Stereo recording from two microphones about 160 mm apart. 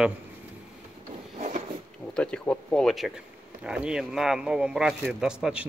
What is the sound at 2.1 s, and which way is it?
Speech, 5° left (ahead or behind).